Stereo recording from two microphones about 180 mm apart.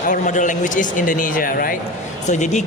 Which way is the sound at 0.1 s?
45° left (ahead or behind).